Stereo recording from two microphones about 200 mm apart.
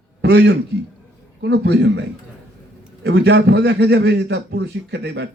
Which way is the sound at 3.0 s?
60° right (ahead or behind).